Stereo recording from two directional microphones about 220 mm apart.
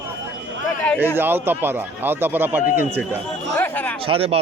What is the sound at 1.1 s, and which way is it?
Speech, 10° right (ahead or behind).